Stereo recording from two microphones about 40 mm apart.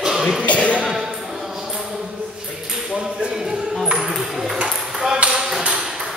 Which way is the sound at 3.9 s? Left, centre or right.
Centre.